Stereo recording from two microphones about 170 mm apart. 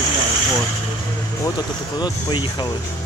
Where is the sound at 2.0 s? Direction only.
25° left (ahead or behind).